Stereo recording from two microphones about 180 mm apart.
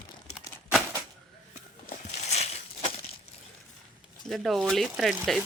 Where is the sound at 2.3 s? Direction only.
35° left (ahead or behind).